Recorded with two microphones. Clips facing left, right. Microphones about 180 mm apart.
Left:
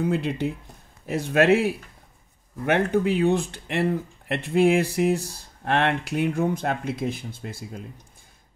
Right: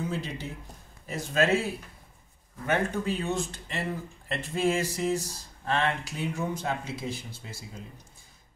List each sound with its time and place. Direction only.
0.0 s speech: 60° left (ahead or behind)